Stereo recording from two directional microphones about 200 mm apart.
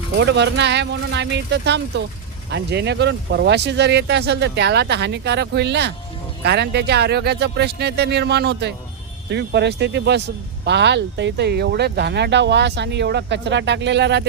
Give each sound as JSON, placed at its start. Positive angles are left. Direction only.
{"t": 0.2, "sound": "speech", "side_deg": -60}